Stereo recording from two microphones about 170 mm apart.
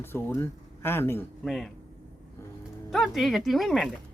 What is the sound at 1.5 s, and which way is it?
Speech, centre (ahead or behind).